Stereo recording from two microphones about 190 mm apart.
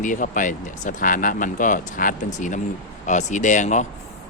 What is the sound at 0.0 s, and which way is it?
Speech, 45° left (ahead or behind).